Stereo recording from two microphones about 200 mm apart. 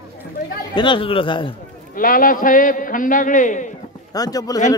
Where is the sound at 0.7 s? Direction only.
25° left (ahead or behind).